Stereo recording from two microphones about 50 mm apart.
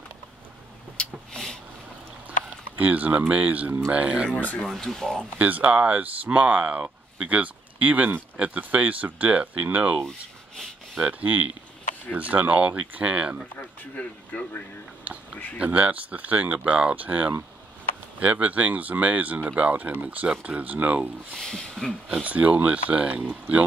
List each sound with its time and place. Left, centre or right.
0.9 s a sound: centre
2.8 s speech: right
4.4 s speech: left
4.6 s speech: centre
5.4 s speech: right
10.0 s speech: centre
11.0 s speech: right
13.6 s speech: left
15.6 s speech: right
21.4 s speech: centre
22.2 s speech: right